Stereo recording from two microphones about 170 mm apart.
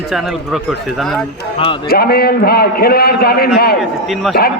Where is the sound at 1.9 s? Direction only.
65° left (ahead or behind).